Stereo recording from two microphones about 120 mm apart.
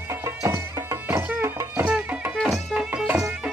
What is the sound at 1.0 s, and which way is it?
Music, 15° right (ahead or behind).